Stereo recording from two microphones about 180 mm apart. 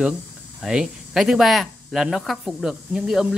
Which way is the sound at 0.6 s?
Centre (ahead or behind).